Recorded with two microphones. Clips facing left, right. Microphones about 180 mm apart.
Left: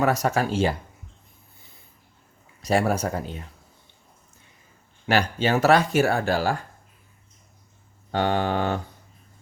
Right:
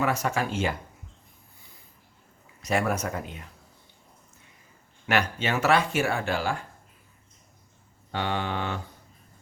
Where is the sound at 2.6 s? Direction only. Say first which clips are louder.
Left 4 dB; 35° left (ahead or behind).